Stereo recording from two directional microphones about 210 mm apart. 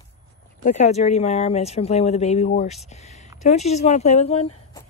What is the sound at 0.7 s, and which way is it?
Speech, 30° left (ahead or behind).